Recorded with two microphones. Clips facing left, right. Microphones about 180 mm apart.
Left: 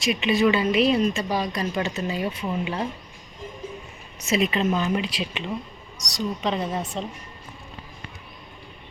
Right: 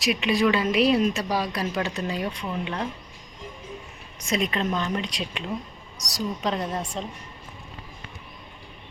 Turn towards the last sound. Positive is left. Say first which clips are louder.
# left 2 dB
turn(degrees=0)  # may be behind; listen again after turning